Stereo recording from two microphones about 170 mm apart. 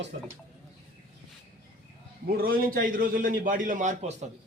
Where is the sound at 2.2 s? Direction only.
60° right (ahead or behind).